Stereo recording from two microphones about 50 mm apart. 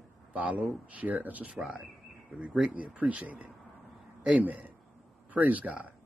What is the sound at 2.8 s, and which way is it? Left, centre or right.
Speech, right.